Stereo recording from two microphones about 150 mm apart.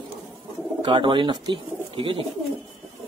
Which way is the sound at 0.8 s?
35° right (ahead or behind).